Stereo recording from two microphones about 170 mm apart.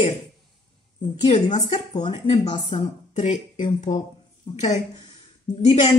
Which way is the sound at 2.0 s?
30° left (ahead or behind).